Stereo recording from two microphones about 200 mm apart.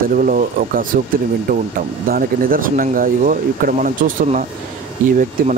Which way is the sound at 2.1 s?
45° right (ahead or behind).